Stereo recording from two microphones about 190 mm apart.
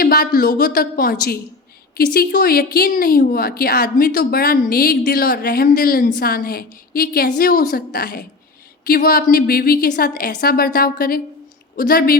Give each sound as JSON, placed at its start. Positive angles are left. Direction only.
{"t": 0.0, "sound": "a woman's voice", "side_deg": 50}